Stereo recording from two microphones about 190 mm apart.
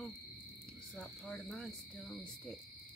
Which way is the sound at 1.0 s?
5° left (ahead or behind).